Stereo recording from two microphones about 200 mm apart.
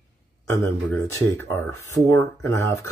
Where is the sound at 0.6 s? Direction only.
15° left (ahead or behind).